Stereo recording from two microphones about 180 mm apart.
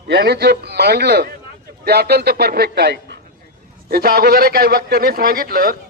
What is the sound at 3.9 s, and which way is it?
Speech, 55° right (ahead or behind).